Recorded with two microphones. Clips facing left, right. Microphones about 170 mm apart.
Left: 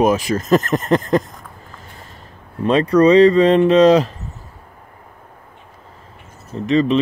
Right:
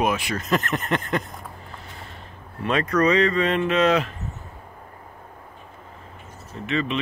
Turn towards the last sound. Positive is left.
turn(degrees=35)  # may be behind; listen again after turning